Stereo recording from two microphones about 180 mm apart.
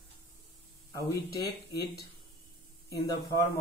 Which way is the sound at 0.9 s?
20° left (ahead or behind).